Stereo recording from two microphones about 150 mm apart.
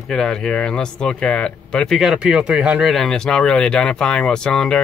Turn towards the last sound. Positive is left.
turn(degrees=5)  # may be behind; listen again after turning